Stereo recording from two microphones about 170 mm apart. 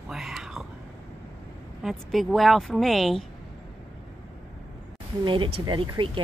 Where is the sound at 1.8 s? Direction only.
Centre (ahead or behind).